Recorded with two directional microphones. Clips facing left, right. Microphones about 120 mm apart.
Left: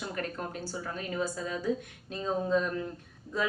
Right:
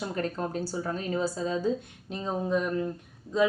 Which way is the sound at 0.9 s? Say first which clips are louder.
Right 2 dB; 30° right (ahead or behind).